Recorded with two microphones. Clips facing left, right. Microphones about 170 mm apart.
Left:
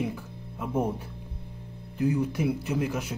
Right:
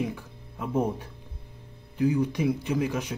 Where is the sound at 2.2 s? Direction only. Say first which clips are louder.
Right 1 dB; 5° left (ahead or behind).